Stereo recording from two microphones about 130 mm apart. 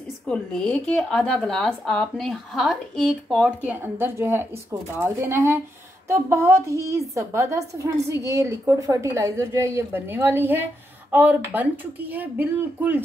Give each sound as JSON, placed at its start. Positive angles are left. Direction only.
{"t": 0.3, "sound": "speech", "side_deg": 10}
{"t": 3.4, "sound": "a woman's voice", "side_deg": -15}